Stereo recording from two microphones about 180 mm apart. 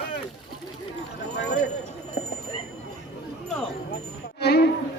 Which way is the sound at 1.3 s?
75° left (ahead or behind).